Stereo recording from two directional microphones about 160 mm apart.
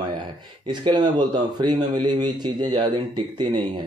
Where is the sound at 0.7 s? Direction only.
30° right (ahead or behind).